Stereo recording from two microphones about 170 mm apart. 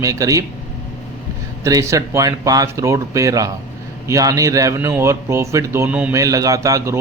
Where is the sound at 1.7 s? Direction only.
20° right (ahead or behind).